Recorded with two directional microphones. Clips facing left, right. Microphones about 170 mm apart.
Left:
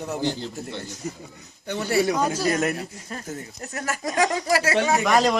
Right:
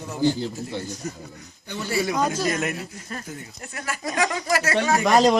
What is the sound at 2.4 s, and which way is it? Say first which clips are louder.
Speech: left 2 dB; 35° left (ahead or behind).